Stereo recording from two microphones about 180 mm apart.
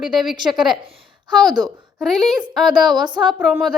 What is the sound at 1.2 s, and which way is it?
Speech, 25° right (ahead or behind).